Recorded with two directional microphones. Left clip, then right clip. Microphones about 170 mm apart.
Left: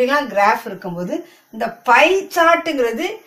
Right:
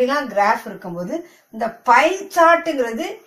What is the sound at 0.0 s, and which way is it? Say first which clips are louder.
Speech: left 2 dB; 25° left (ahead or behind).